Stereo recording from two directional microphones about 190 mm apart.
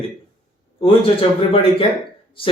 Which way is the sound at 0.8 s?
30° left (ahead or behind).